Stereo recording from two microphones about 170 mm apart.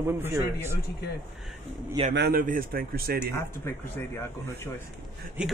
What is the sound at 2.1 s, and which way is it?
A man's voice, 70° right (ahead or behind).